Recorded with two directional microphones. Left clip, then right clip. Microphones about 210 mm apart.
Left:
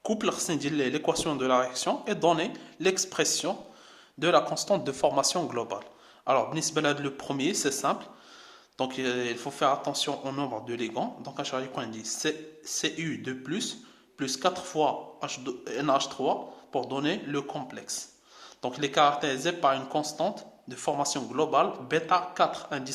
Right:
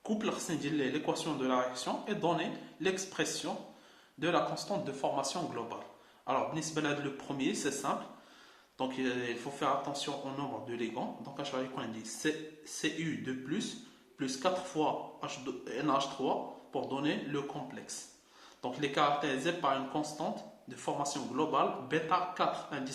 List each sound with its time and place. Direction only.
0.0 s speech: 50° left (ahead or behind)